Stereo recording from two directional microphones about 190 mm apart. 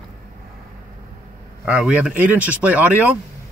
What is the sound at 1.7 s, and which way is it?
Speech, 5° right (ahead or behind).